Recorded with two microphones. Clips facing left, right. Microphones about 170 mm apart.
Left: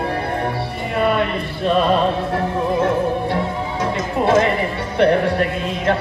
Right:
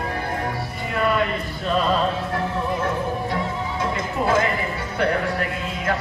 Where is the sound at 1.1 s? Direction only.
65° left (ahead or behind).